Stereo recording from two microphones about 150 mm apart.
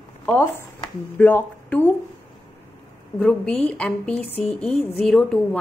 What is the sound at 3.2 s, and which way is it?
A woman's voice, 5° left (ahead or behind).